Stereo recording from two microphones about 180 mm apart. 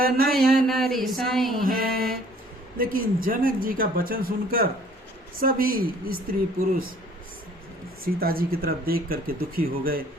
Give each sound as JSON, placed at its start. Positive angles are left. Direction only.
{"t": 0.0, "sound": "speech", "side_deg": -55}
{"t": 0.5, "sound": "speech", "side_deg": 0}
{"t": 1.6, "sound": "mantra", "side_deg": -55}
{"t": 2.7, "sound": "speech", "side_deg": -55}
{"t": 8.0, "sound": "speech", "side_deg": -55}